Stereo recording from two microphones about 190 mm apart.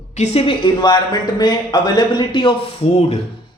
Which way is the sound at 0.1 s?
35° left (ahead or behind).